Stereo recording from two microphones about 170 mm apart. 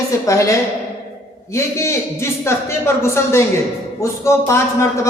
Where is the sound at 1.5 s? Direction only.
15° left (ahead or behind).